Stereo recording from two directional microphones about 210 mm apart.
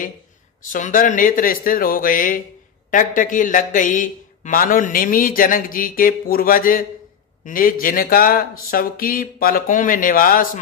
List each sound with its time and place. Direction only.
0.7 s a man's voice: 40° left (ahead or behind)